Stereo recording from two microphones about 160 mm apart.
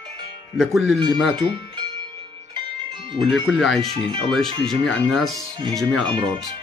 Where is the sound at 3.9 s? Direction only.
35° right (ahead or behind).